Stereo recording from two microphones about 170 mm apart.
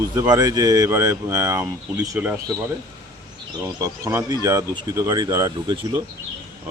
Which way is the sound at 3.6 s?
15° right (ahead or behind).